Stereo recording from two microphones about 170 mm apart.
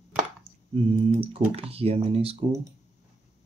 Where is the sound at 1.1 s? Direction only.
35° right (ahead or behind).